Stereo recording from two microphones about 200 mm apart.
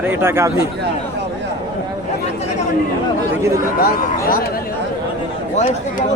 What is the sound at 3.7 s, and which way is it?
Speech, 45° left (ahead or behind).